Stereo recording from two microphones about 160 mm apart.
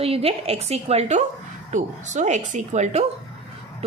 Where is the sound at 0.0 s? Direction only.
35° right (ahead or behind).